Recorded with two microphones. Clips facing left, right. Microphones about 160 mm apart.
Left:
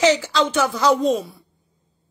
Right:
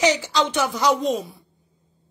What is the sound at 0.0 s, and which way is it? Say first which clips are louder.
A woman's voice: left 3 dB; 15° right (ahead or behind).